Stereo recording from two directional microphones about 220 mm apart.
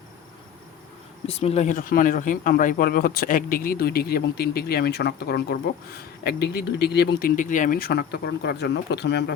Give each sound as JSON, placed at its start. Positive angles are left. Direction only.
{"t": 1.3, "sound": "speech", "side_deg": 25}